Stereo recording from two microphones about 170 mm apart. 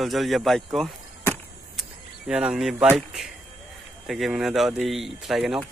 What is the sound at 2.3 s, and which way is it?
A man's voice, 5° right (ahead or behind).